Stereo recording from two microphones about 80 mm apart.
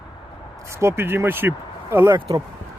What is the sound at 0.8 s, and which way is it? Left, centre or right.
Speech, right.